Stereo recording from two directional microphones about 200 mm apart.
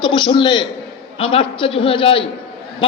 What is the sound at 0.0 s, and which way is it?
A man's voice, 25° left (ahead or behind).